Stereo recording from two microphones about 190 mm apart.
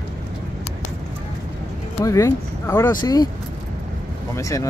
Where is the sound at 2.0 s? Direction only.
15° left (ahead or behind).